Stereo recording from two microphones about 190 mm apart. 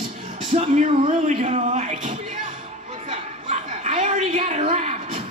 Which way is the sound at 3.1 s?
35° right (ahead or behind).